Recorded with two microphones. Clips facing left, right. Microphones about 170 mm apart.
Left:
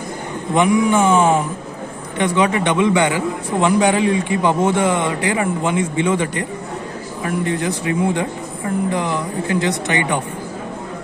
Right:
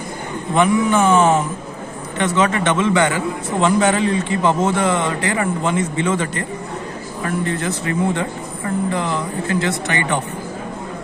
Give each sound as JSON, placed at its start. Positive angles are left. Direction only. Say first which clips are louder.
{"t": 0.6, "sound": "a man's voice", "louder": "left 1 dB", "side_deg": 15}